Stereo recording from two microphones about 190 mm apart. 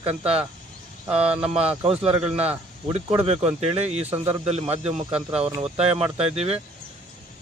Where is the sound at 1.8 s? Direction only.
30° right (ahead or behind).